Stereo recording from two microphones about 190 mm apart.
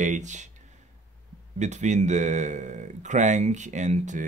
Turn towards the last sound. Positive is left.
turn(degrees=-40)  # may be behind; listen again after turning